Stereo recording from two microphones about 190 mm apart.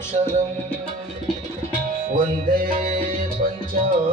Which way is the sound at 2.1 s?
45° right (ahead or behind).